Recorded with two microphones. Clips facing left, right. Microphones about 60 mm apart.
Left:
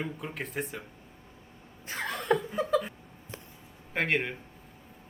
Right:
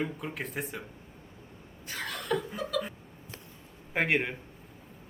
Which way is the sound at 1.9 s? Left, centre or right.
Left.